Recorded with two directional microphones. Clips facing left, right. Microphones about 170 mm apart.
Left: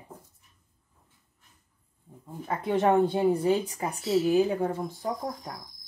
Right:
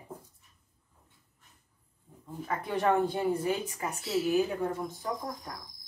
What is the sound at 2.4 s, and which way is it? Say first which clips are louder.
Speech: left 4 dB; 25° left (ahead or behind).